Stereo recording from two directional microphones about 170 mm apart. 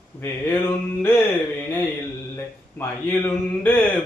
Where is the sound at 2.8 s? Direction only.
10° left (ahead or behind).